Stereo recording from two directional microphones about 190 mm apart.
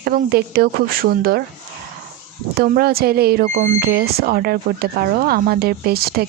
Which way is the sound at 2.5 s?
50° right (ahead or behind).